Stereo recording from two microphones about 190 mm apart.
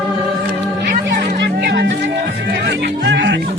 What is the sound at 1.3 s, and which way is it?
Music, 55° right (ahead or behind).